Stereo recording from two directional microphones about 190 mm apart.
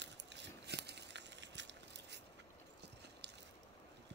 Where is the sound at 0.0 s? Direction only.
65° right (ahead or behind).